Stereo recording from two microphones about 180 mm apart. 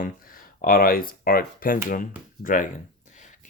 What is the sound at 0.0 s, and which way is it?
Speech, 50° left (ahead or behind).